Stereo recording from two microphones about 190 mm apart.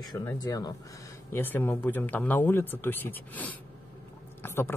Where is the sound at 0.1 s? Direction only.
15° left (ahead or behind).